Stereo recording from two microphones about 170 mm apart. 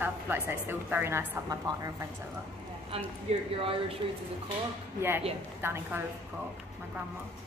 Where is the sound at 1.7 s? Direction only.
25° right (ahead or behind).